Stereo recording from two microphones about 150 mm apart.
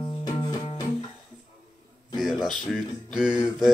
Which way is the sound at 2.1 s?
Centre (ahead or behind).